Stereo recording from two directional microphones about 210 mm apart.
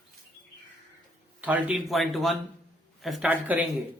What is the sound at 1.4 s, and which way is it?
A man's voice, 5° right (ahead or behind).